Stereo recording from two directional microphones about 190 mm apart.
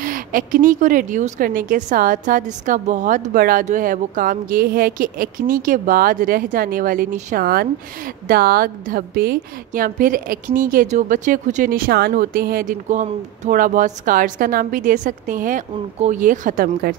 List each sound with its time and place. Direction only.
0.0 s a woman's voice: 45° right (ahead or behind)